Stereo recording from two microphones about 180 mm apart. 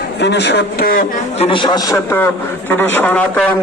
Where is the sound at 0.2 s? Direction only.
70° left (ahead or behind).